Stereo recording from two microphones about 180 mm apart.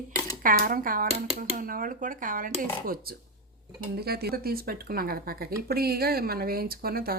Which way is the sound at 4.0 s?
60° right (ahead or behind).